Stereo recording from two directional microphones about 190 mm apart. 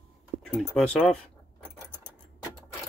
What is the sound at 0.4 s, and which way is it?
Speech, 5° left (ahead or behind).